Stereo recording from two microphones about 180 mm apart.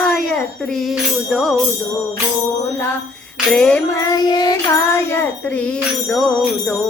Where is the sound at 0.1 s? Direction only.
5° left (ahead or behind).